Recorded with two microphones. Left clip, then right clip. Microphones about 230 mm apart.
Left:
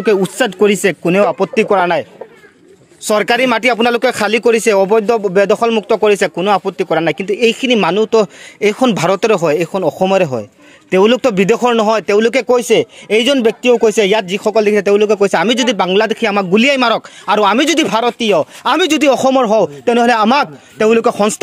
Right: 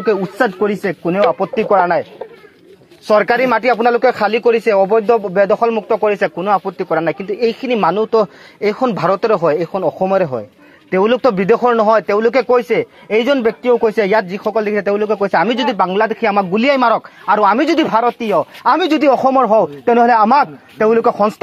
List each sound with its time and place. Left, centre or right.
0.1 s a man's voice: left
3.2 s speech: left
4.2 s speech: left
8.9 s a man's voice: left